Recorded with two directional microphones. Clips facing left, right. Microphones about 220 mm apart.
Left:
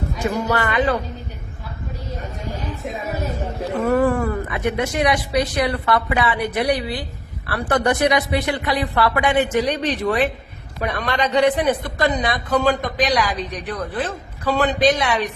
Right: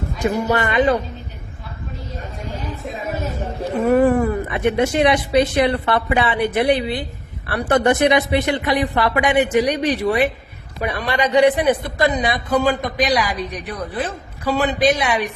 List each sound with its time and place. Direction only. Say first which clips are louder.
0.3 s speech: right 2 dB; 20° right (ahead or behind)
3.8 s a man's voice: right 4 dB; 20° right (ahead or behind)